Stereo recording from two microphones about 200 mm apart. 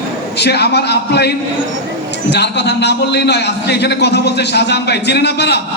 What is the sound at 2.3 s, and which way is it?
A man's voice, 55° left (ahead or behind).